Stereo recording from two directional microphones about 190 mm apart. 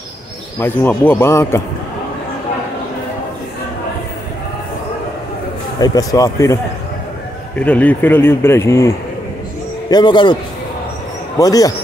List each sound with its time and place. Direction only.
0.6 s a man's voice: 10° left (ahead or behind)
5.8 s a man's voice: 20° left (ahead or behind)
11.3 s a man's voice: 20° left (ahead or behind)